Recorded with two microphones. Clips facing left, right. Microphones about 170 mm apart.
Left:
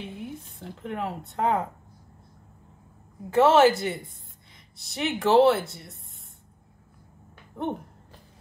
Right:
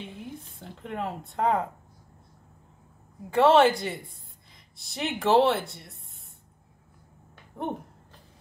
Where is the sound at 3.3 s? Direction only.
Centre (ahead or behind).